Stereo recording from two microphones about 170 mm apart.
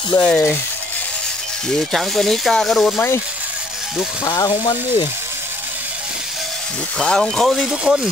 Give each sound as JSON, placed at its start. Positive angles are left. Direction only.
{"t": 0.1, "sound": "speech", "side_deg": 10}
{"t": 1.7, "sound": "speech", "side_deg": 0}
{"t": 4.2, "sound": "speech", "side_deg": 20}
{"t": 7.0, "sound": "speech", "side_deg": 5}